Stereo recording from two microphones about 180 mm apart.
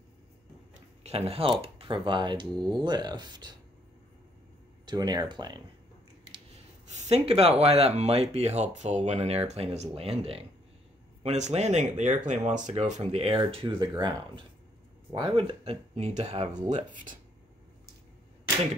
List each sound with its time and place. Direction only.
0.7 s speech: 35° right (ahead or behind)
4.8 s speech: 20° right (ahead or behind)
6.9 s speech: 35° right (ahead or behind)